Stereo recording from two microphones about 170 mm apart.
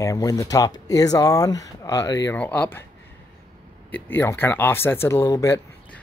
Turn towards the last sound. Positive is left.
turn(degrees=15)  # may be behind; listen again after turning